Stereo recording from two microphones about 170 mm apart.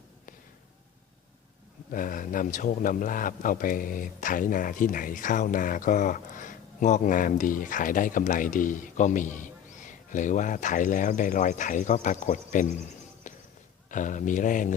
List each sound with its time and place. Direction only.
1.9 s a man's voice: 55° left (ahead or behind)
13.2 s a sound: 45° left (ahead or behind)
13.9 s a man's voice: 50° left (ahead or behind)